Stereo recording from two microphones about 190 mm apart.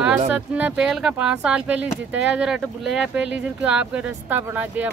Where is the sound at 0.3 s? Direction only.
5° right (ahead or behind).